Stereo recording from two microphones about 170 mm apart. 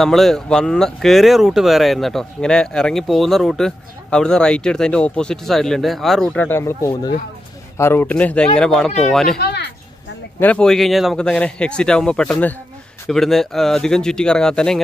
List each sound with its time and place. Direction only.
0.0 s speech: centre (ahead or behind)
9.4 s speech: 75° left (ahead or behind)
10.4 s speech: 5° left (ahead or behind)